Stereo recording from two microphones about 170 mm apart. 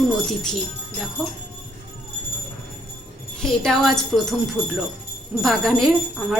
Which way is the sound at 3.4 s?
5° left (ahead or behind).